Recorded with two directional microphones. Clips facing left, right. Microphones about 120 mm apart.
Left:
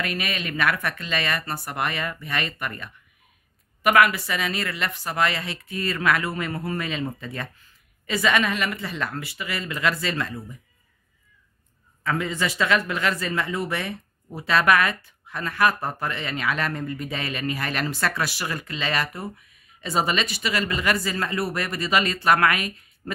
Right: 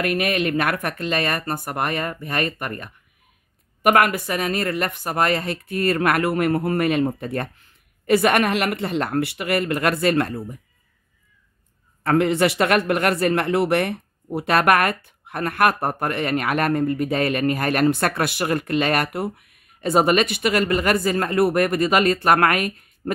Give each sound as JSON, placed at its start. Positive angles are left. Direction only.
{"t": 0.0, "sound": "speech", "side_deg": -55}
{"t": 12.0, "sound": "speech", "side_deg": -65}